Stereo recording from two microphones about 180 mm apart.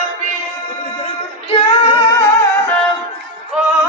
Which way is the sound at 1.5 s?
30° left (ahead or behind).